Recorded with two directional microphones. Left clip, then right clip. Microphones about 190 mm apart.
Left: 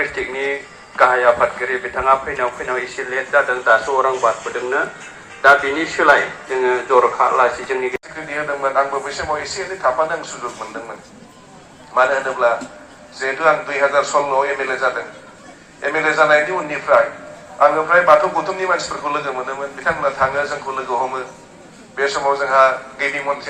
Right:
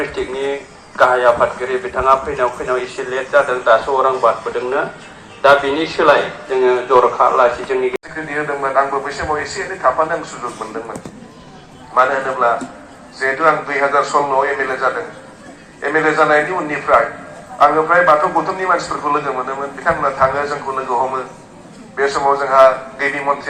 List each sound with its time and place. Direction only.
0.9 s a man's voice: 25° left (ahead or behind); by 2.8 s 5° left (ahead or behind)
3.1 s a man's voice: 25° left (ahead or behind)
5.4 s a man's voice: 25° left (ahead or behind)
11.9 s a man's voice: 25° left (ahead or behind)
18.9 s a man's voice: 35° left (ahead or behind)
22.6 s a man's voice: 40° left (ahead or behind)